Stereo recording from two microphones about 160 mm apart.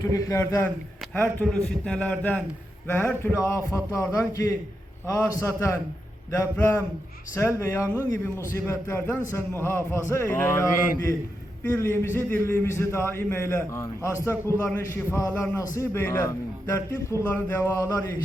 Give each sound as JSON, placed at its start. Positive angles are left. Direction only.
{"t": 0.0, "sound": "a man's voice", "side_deg": 20}